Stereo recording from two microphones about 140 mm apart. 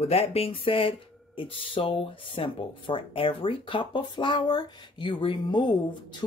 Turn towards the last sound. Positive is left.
turn(degrees=35)  # may be behind; listen again after turning